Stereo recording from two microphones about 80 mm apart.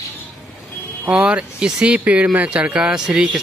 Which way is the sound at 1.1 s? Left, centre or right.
Centre.